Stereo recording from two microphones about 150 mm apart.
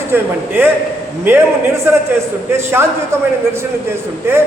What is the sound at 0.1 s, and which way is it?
Speech, 15° right (ahead or behind).